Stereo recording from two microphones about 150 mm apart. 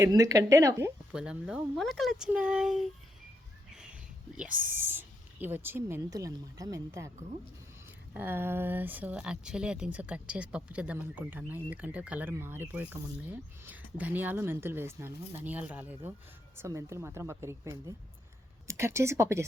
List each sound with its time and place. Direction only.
0.0 s speech: 25° right (ahead or behind)
1.1 s speech: 5° right (ahead or behind)
4.4 s speech: 10° right (ahead or behind)
8.1 s speech: 15° right (ahead or behind)